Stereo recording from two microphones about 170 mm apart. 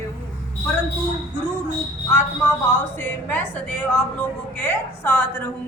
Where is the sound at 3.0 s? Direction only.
10° left (ahead or behind).